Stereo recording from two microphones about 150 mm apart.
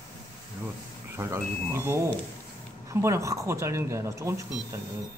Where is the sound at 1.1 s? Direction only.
20° right (ahead or behind).